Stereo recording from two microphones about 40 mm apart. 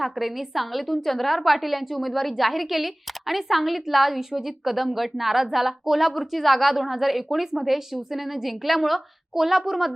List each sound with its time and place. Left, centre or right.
0.0 s a woman's voice: centre
4.3 s a woman's voice: centre
4.6 s a woman's voice: centre